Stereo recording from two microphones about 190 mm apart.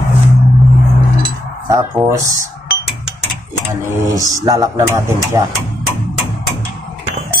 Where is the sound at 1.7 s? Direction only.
15° right (ahead or behind).